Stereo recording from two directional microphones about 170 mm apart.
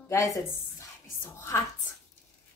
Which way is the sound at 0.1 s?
20° left (ahead or behind).